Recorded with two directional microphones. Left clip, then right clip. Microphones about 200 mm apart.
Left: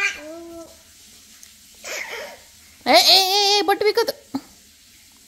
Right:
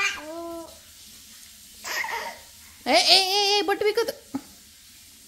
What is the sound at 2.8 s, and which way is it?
Babbling, 20° left (ahead or behind).